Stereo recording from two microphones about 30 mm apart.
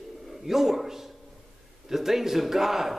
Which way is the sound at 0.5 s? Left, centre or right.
Centre.